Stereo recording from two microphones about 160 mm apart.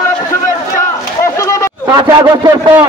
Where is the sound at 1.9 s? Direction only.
25° right (ahead or behind).